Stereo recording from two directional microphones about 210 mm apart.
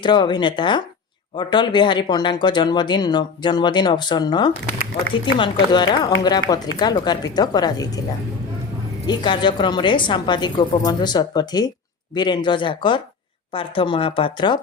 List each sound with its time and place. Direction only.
0.0 s speech: 20° left (ahead or behind)
9.0 s speech: 20° left (ahead or behind)